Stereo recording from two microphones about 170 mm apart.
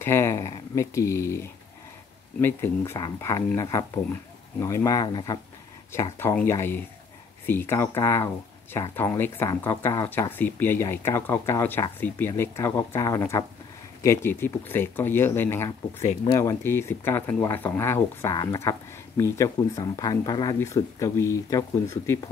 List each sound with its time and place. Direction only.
0.0 s speech: 15° left (ahead or behind)
6.1 s speech: 15° left (ahead or behind)